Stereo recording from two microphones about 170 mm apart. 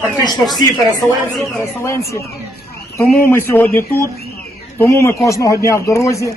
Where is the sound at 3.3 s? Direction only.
15° left (ahead or behind).